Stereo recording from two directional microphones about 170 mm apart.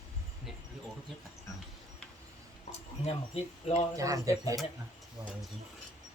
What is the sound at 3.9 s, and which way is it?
Speech, 20° right (ahead or behind).